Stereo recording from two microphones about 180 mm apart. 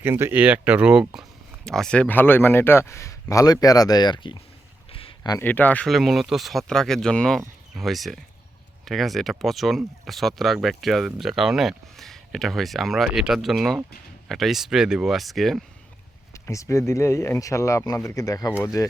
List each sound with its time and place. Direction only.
0.0 s speech: 15° right (ahead or behind); by 4.4 s 25° left (ahead or behind)
4.9 s a sound: 30° left (ahead or behind)
5.4 s speech: 10° left (ahead or behind)
16.3 s speech: 15° left (ahead or behind)